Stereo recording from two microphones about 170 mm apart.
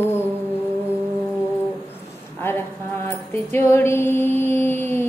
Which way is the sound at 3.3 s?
15° left (ahead or behind).